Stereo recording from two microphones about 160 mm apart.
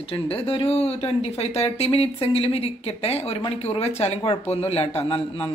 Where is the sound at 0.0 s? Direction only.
35° left (ahead or behind).